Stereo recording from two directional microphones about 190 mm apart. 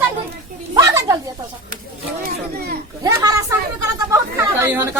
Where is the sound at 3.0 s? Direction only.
15° right (ahead or behind).